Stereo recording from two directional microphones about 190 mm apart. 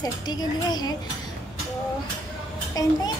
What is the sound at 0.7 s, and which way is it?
Speech, 20° left (ahead or behind).